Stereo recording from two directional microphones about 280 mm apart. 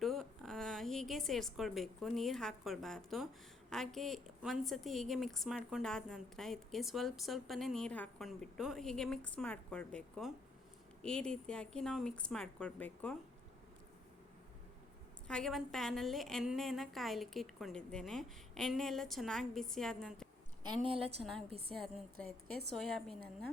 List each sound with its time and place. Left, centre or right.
0.0 s a woman's voice: centre
15.3 s a woman's voice: centre
20.8 s a woman's voice: centre
21.7 s a woman's voice: centre